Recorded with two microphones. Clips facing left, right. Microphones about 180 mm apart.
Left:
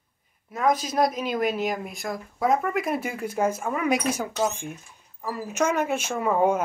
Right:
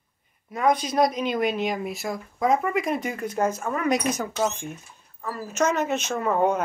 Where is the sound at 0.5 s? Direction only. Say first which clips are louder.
Right 1 dB; centre (ahead or behind).